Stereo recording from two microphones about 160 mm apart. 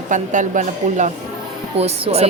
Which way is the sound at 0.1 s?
50° right (ahead or behind).